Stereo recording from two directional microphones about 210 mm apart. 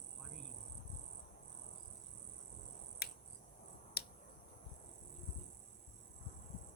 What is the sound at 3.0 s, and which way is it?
Cricket, 50° left (ahead or behind).